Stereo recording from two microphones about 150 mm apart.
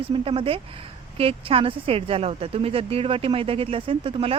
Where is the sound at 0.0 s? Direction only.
35° right (ahead or behind).